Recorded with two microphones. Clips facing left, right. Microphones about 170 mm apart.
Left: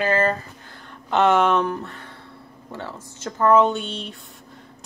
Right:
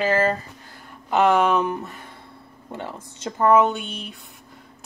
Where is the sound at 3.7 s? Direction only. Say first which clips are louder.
Left 3 dB; centre (ahead or behind).